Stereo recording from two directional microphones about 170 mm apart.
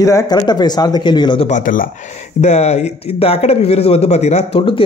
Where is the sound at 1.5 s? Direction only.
50° left (ahead or behind).